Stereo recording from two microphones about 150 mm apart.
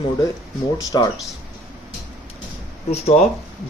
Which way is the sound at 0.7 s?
25° left (ahead or behind).